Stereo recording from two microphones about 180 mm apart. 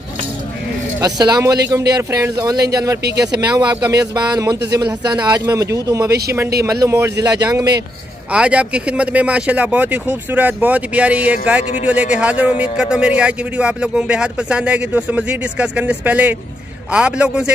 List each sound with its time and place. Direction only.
1.0 s speech: 20° right (ahead or behind)
8.3 s speech: 5° right (ahead or behind)